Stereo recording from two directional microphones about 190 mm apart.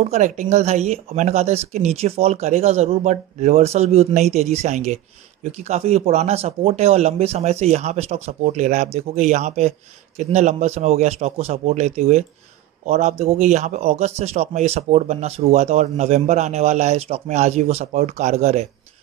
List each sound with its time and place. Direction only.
0.0 s speech: 35° right (ahead or behind)